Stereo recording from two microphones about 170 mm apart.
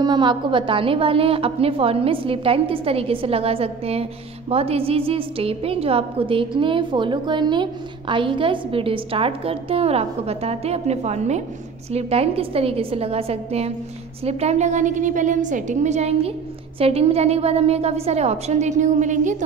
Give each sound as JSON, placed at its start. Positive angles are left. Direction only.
{"t": 0.0, "sound": "a woman's voice", "side_deg": -25}